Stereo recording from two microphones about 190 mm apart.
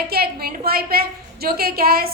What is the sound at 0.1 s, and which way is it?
A woman's voice, 55° right (ahead or behind).